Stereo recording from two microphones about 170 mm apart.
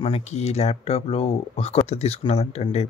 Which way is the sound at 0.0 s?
40° left (ahead or behind).